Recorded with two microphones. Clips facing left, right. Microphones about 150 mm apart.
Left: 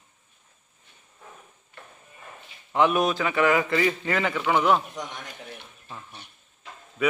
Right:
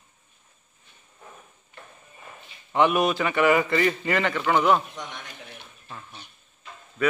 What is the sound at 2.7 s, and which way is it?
A man's voice, centre (ahead or behind).